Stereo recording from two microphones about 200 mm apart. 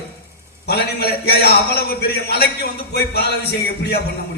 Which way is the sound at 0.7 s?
55° left (ahead or behind).